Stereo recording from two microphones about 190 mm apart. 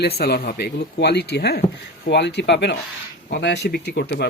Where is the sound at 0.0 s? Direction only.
55° left (ahead or behind).